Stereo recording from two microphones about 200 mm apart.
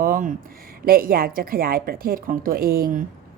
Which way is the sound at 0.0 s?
40° right (ahead or behind).